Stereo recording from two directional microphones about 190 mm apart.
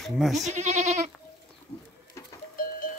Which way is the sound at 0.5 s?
35° right (ahead or behind).